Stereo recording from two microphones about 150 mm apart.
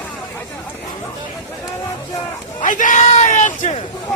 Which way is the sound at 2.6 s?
60° left (ahead or behind).